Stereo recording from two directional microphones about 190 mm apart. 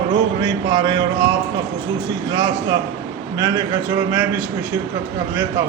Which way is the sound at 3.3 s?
15° right (ahead or behind).